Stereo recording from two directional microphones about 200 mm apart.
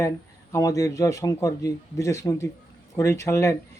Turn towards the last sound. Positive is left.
turn(degrees=15)  # may be behind; listen again after turning